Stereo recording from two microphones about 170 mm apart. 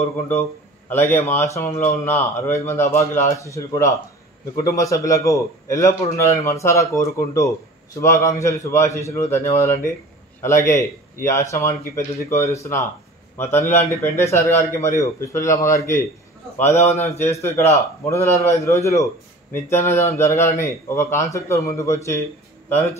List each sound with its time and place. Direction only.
0.3 s a man's voice: 15° left (ahead or behind)
16.7 s speech: 40° left (ahead or behind)
17.2 s a man's voice: 15° left (ahead or behind)